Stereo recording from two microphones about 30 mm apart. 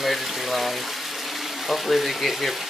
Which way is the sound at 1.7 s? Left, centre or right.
Centre.